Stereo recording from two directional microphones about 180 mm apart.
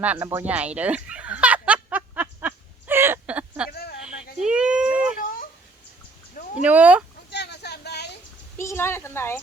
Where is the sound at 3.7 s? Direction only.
60° left (ahead or behind).